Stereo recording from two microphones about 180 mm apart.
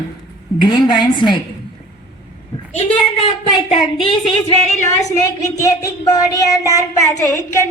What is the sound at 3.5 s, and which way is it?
Speech, 30° left (ahead or behind).